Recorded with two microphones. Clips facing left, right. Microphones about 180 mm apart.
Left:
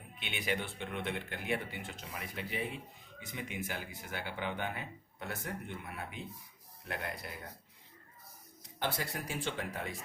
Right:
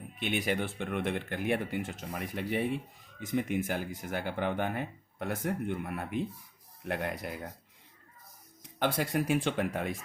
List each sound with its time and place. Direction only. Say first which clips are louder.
0.2 s speech: right 6 dB; 45° right (ahead or behind)
8.8 s speech: right 8 dB; 60° right (ahead or behind)